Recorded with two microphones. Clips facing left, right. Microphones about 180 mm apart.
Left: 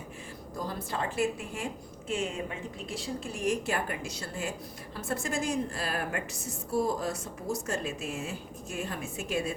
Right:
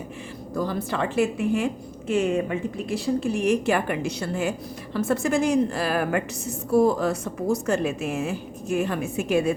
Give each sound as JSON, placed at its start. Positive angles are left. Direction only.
{"t": 0.5, "sound": "speech", "side_deg": -75}
{"t": 2.1, "sound": "a woman's voice", "side_deg": -65}
{"t": 6.7, "sound": "a woman's voice", "side_deg": -65}